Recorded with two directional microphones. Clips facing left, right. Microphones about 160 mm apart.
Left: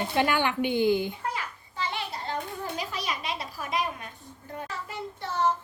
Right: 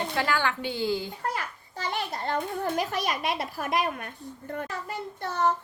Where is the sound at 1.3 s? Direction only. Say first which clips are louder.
Right 1 dB; 45° right (ahead or behind).